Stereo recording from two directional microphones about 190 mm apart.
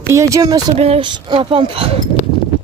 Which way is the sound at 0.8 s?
30° right (ahead or behind).